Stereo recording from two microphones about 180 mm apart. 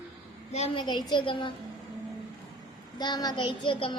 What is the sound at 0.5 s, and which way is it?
Speech, 30° left (ahead or behind).